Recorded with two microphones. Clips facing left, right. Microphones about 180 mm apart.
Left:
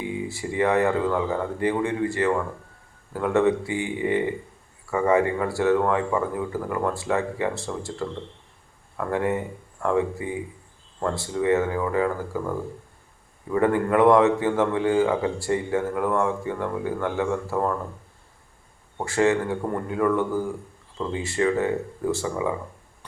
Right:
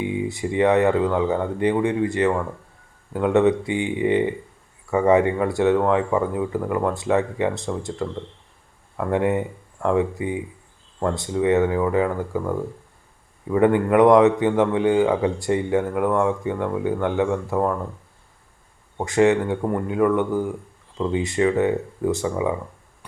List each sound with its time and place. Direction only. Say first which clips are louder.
0.0 s a man's voice: right 5 dB; 20° right (ahead or behind)
18.9 s a man's voice: right 4 dB; 20° right (ahead or behind)